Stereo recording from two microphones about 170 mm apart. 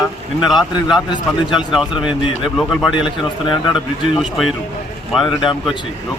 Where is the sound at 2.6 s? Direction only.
5° left (ahead or behind).